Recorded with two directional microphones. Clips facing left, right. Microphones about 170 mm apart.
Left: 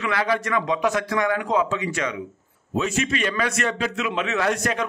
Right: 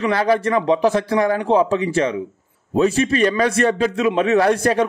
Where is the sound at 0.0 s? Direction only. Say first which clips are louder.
Right 6 dB; 35° right (ahead or behind).